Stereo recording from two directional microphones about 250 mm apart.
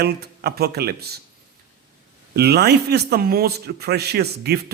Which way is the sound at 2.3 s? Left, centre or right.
Right.